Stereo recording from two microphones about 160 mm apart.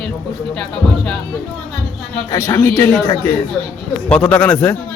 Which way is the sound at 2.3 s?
20° left (ahead or behind).